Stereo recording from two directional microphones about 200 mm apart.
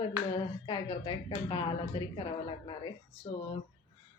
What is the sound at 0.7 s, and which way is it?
A woman's voice, 25° left (ahead or behind).